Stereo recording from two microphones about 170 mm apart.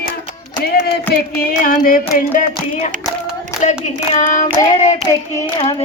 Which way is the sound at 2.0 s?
40° left (ahead or behind).